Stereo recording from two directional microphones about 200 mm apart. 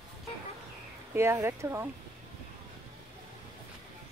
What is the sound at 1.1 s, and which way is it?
Speech, 15° right (ahead or behind).